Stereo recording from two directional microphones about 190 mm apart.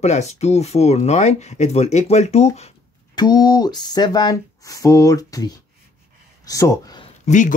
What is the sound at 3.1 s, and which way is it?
Speech, 20° left (ahead or behind).